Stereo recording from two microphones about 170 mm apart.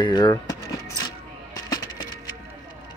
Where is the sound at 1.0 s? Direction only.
20° left (ahead or behind).